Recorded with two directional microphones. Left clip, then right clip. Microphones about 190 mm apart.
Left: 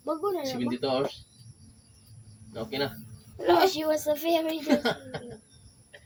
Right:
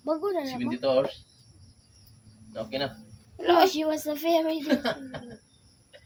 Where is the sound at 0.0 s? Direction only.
25° right (ahead or behind).